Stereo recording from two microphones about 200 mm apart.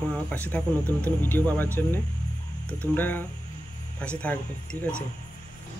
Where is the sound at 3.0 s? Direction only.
10° left (ahead or behind).